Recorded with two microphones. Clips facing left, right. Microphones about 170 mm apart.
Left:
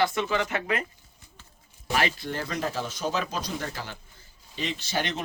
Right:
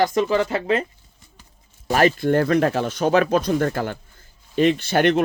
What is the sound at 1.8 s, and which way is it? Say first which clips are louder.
Speech: right 10 dB; 45° right (ahead or behind).